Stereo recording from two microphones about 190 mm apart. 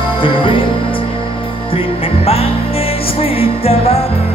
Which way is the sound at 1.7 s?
30° left (ahead or behind).